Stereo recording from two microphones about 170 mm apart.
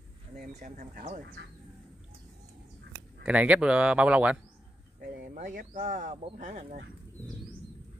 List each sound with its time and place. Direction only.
0.5 s speech: 40° right (ahead or behind)
3.3 s speech: 5° right (ahead or behind)
5.0 s speech: 55° right (ahead or behind)